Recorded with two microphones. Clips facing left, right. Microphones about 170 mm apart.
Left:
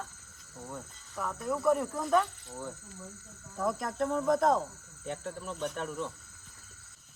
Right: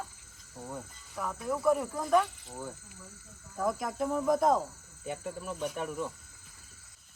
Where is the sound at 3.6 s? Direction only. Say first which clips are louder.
Even; centre (ahead or behind).